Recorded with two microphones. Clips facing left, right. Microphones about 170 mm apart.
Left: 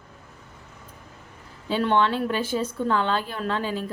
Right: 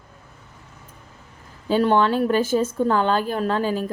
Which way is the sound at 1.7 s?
40° right (ahead or behind).